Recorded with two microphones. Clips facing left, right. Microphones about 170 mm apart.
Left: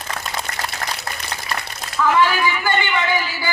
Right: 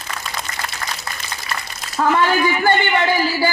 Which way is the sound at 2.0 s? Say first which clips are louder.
Right 1 dB; 40° right (ahead or behind).